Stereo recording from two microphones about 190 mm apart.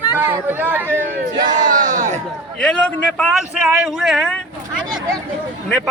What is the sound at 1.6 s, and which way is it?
Speech, 45° right (ahead or behind).